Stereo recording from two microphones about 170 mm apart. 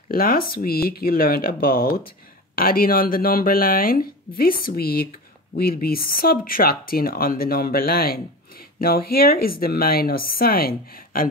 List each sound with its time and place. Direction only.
0.1 s speech: 60° left (ahead or behind)